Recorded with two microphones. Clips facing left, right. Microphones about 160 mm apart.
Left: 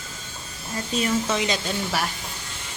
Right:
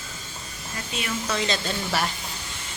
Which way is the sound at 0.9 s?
40° left (ahead or behind).